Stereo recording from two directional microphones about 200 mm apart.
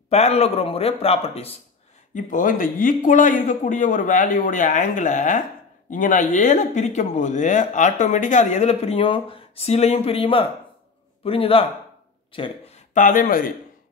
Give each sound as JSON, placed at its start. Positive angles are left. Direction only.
{"t": 0.1, "sound": "speech", "side_deg": 30}
{"t": 2.1, "sound": "a man's voice", "side_deg": 40}
{"t": 12.9, "sound": "speech", "side_deg": 40}